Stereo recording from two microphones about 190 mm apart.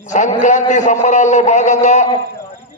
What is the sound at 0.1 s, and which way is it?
A man's voice, 40° left (ahead or behind).